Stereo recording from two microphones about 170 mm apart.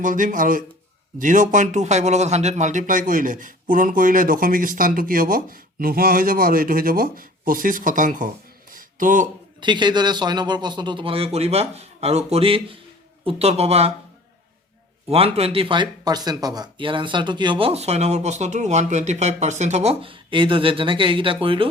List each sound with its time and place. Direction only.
0.0 s speech: 50° right (ahead or behind)
8.7 s a sound: 50° right (ahead or behind)
9.6 s speech: 25° right (ahead or behind)
15.1 s speech: 35° right (ahead or behind)